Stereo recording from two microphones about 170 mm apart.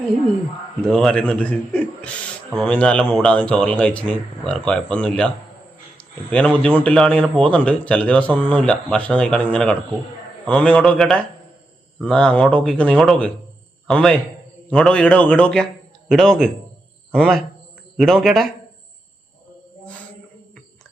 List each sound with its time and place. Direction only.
0.8 s a man's voice: 5° left (ahead or behind)
18.0 s speech: centre (ahead or behind)